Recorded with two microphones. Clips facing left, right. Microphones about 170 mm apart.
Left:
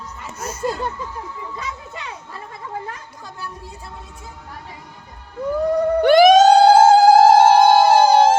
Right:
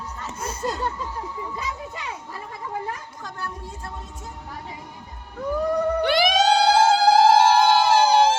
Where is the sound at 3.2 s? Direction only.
5° left (ahead or behind).